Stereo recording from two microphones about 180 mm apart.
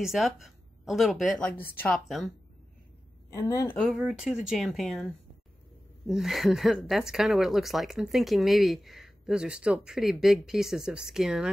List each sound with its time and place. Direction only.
0.0 s speech: centre (ahead or behind)
1.6 s a woman's voice: 10° left (ahead or behind)
2.0 s speech: centre (ahead or behind)
3.3 s a woman's voice: 20° left (ahead or behind)
3.7 s speech: centre (ahead or behind)